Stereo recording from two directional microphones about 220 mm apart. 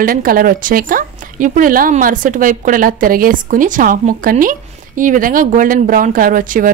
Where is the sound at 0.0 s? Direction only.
40° right (ahead or behind).